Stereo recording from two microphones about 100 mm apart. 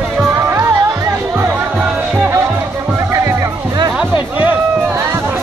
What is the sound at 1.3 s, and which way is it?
Music, 15° right (ahead or behind).